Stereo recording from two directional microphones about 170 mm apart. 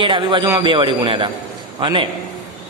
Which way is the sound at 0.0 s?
30° right (ahead or behind).